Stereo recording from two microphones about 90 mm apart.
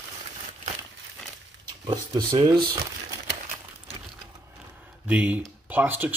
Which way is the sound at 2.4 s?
50° right (ahead or behind).